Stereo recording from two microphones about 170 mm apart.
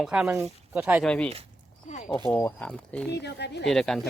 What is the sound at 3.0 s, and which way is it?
Speech, 80° left.